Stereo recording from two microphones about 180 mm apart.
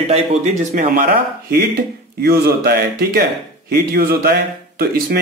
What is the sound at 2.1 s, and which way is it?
Speech, 60° right (ahead or behind).